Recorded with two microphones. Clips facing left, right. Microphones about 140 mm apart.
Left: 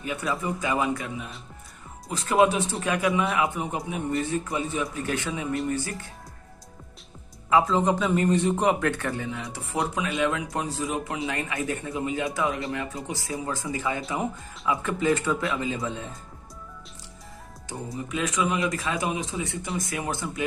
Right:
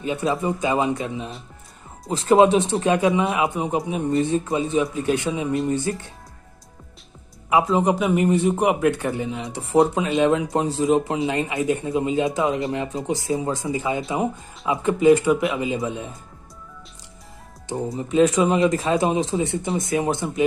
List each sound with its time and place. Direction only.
0.0 s speech: 25° right (ahead or behind)
7.4 s a man's voice: 15° right (ahead or behind)
17.9 s speech: 30° right (ahead or behind)